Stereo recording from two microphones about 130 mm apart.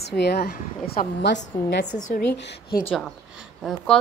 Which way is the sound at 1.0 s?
90° left.